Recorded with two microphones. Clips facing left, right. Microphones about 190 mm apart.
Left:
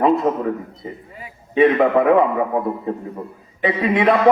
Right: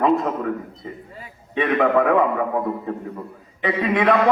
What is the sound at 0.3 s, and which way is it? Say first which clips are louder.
Speech: left 5 dB; 25° left (ahead or behind).